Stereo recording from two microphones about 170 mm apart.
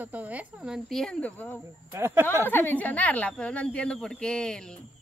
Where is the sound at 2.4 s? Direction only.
10° left (ahead or behind).